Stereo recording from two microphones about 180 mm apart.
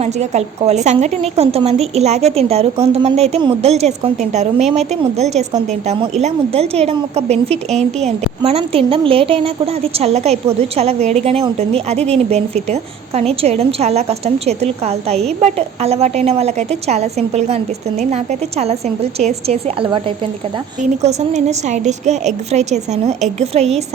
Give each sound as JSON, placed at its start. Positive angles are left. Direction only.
{"t": 0.0, "sound": "a woman's voice", "side_deg": -40}